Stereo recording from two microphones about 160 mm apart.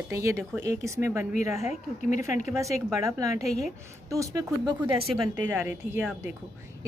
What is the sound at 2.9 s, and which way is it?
Speech, 20° right (ahead or behind).